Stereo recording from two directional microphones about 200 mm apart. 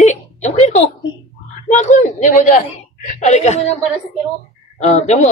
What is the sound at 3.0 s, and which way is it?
Speech, 35° left (ahead or behind).